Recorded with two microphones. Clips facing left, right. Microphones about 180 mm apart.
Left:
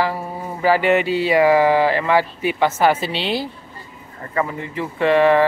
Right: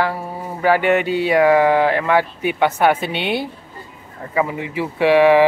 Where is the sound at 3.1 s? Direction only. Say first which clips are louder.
Right 1 dB; 60° right (ahead or behind).